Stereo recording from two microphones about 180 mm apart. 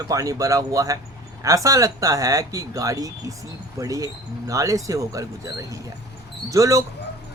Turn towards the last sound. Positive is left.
turn(degrees=-20)  # may be behind; listen again after turning